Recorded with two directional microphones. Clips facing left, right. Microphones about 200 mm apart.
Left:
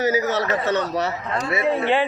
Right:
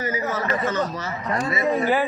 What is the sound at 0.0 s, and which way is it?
Speech, 75° left (ahead or behind).